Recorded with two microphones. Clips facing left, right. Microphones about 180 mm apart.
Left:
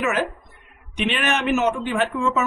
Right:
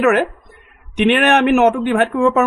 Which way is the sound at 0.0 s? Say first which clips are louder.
Right 9 dB; 60° right (ahead or behind).